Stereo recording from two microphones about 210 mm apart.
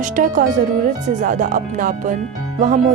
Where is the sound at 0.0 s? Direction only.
40° right (ahead or behind).